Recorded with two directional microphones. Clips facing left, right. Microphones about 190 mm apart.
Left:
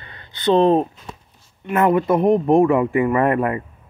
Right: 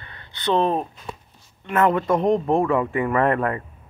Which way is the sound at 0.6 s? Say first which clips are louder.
Left 7 dB; 30° left (ahead or behind).